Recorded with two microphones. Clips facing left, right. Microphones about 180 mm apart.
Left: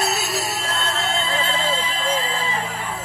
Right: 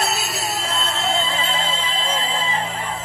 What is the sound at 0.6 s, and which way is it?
Music, centre (ahead or behind).